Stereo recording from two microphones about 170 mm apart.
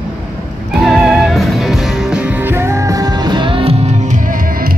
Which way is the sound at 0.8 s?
Centre (ahead or behind).